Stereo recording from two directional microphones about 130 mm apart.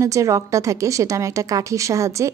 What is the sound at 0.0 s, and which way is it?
A woman's voice, 25° right (ahead or behind).